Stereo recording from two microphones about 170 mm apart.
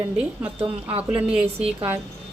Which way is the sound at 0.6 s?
30° right (ahead or behind).